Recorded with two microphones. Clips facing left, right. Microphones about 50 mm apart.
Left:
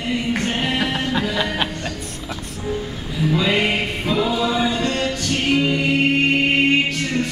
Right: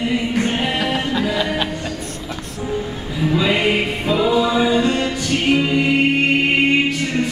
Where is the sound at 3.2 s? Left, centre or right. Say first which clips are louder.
Right 1 dB; centre.